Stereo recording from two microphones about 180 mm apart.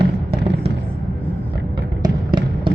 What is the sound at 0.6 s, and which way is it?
Vehicle, 35° right (ahead or behind).